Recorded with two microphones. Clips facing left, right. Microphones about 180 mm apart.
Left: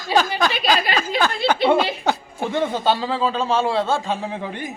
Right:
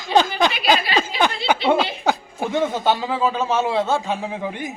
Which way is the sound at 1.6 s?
5° right (ahead or behind).